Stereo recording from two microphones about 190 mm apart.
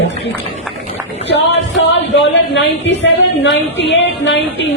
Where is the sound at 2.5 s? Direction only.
70° left (ahead or behind).